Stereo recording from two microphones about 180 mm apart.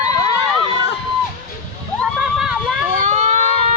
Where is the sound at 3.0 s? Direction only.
40° right (ahead or behind).